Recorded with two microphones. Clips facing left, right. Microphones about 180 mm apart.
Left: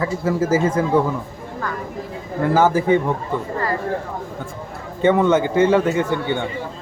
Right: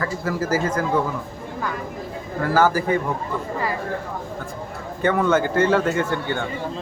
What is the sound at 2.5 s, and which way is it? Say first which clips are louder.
Speech: left 3 dB; 20° left (ahead or behind).